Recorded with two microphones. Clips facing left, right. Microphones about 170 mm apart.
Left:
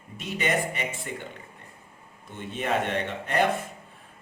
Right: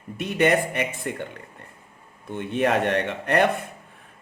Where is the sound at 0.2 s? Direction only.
60° right (ahead or behind).